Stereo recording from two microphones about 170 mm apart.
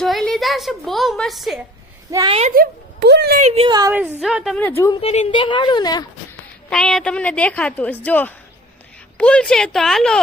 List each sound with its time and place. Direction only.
0.0 s a woman's voice: centre (ahead or behind)
2.0 s a woman's voice: 20° right (ahead or behind)
2.6 s speech: 75° right (ahead or behind)
3.4 s speech: 35° right (ahead or behind)
3.9 s a woman's voice: 10° right (ahead or behind); by 4.9 s 15° left (ahead or behind)
4.9 s a woman's voice: 40° left (ahead or behind)
6.7 s a woman's voice: 5° left (ahead or behind)